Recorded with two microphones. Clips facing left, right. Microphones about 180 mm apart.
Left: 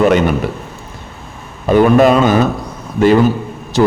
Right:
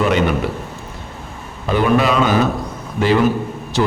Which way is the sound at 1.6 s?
45° left (ahead or behind).